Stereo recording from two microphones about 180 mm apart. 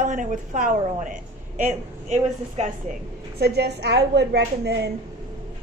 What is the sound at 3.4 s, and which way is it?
A woman's voice, 65° right (ahead or behind).